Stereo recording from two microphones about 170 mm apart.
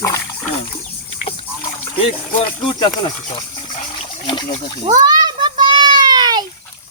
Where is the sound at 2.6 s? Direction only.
30° left (ahead or behind).